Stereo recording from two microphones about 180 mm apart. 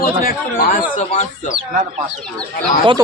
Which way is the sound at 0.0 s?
50° left (ahead or behind).